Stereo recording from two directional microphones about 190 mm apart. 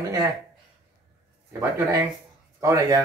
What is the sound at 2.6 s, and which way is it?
Speech, 15° right (ahead or behind).